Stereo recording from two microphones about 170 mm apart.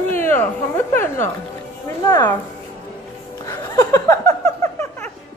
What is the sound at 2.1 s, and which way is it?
Speech, 15° left (ahead or behind).